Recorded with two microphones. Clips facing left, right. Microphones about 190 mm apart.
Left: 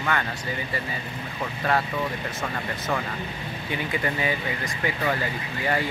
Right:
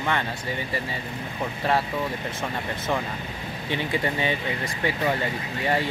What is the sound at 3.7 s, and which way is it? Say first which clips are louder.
Speech: right 2 dB; 25° right (ahead or behind).